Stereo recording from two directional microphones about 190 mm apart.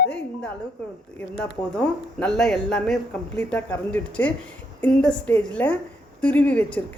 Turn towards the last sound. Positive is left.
turn(degrees=10)  # may be behind; listen again after turning